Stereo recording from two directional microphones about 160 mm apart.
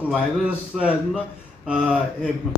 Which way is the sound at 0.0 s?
10° right (ahead or behind).